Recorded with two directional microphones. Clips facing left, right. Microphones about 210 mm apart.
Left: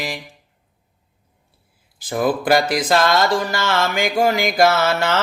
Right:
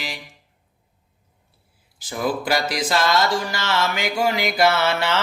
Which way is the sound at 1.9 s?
55° left (ahead or behind).